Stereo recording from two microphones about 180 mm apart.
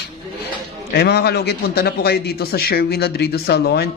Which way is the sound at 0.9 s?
65° left (ahead or behind).